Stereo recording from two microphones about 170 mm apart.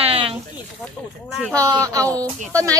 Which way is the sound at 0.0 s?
35° right (ahead or behind).